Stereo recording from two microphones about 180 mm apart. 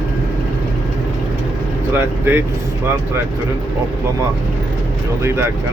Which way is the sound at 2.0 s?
10° right (ahead or behind).